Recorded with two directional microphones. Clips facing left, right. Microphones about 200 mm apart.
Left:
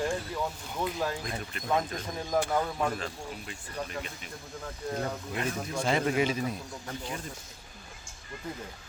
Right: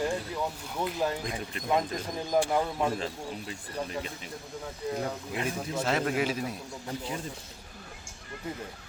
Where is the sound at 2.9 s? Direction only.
30° right (ahead or behind).